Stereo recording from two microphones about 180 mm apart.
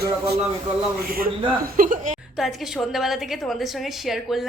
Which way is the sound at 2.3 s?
Centre (ahead or behind).